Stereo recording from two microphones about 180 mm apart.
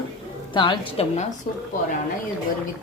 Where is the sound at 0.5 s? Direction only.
25° left (ahead or behind).